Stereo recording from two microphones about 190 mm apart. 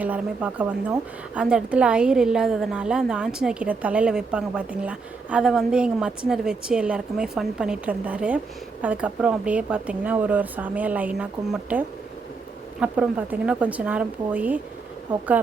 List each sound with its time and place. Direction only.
0.0 s a woman's voice: 10° right (ahead or behind)
12.8 s speech: 5° right (ahead or behind)